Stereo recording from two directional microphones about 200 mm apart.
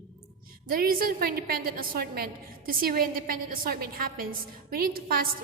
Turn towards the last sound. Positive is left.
turn(degrees=-45)  # may be behind; listen again after turning